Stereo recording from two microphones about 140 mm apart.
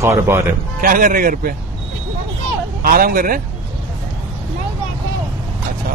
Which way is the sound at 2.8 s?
90° right.